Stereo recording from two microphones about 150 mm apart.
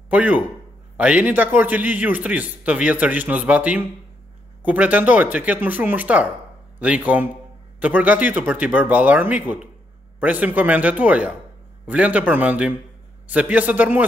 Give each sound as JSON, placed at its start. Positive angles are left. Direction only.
{"t": 0.1, "sound": "a man's voice", "side_deg": -10}